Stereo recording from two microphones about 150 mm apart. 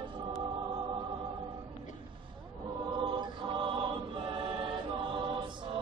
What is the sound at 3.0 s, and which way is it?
Chant, 35° right (ahead or behind).